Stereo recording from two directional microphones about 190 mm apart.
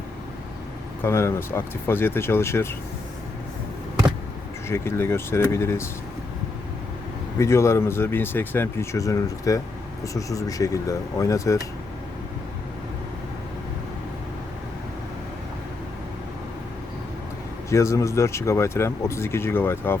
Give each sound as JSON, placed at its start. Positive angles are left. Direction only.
{"t": 1.0, "sound": "speech", "side_deg": 15}
{"t": 4.7, "sound": "speech", "side_deg": 15}
{"t": 7.3, "sound": "speech", "side_deg": 15}
{"t": 17.7, "sound": "speech", "side_deg": 15}